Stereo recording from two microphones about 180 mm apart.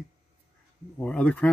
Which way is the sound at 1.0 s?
5° left (ahead or behind).